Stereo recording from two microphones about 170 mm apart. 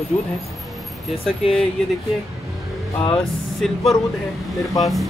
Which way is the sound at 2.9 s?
30° left (ahead or behind).